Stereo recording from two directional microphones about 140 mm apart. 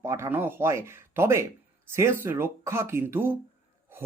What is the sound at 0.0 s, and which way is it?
Speech, 20° right (ahead or behind).